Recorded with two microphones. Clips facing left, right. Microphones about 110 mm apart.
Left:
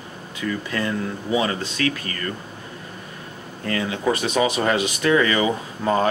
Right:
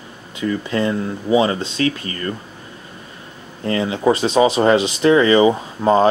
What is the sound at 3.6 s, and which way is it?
Speech, 25° right (ahead or behind).